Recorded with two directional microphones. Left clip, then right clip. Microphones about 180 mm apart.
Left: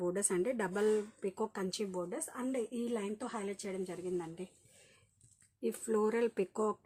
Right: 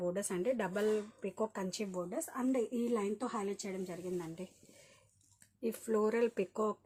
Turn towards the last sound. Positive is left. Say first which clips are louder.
# even
turn(degrees=25)  # may be behind; listen again after turning